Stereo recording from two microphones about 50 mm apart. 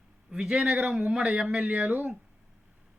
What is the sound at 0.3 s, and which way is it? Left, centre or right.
A man's voice, centre.